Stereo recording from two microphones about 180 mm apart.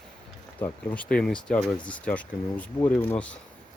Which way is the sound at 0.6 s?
10° left (ahead or behind).